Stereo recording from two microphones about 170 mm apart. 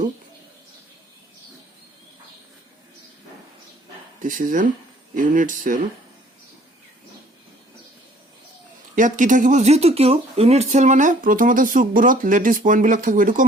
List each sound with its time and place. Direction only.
4.2 s speech: 50° right (ahead or behind)
9.0 s speech: 50° right (ahead or behind)